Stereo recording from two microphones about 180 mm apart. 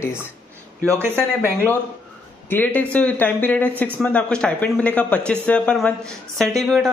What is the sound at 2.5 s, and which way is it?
Speech, 10° left (ahead or behind).